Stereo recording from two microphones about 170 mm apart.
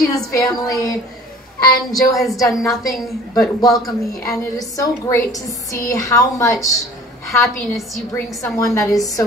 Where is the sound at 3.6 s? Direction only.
20° left (ahead or behind).